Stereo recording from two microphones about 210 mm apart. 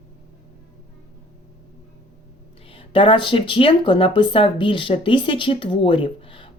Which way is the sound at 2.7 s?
25° left (ahead or behind).